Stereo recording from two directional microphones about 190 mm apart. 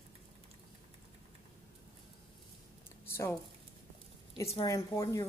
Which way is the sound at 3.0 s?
15° left (ahead or behind).